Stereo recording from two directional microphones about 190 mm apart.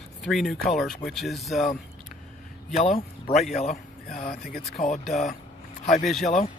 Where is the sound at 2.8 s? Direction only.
35° left (ahead or behind).